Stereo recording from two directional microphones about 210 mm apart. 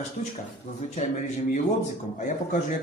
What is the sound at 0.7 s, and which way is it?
Speech, 30° left (ahead or behind).